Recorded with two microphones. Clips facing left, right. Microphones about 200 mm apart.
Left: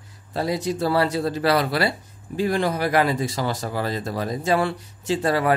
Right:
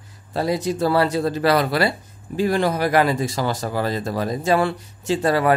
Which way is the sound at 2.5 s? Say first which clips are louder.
Right 3 dB; 70° right (ahead or behind).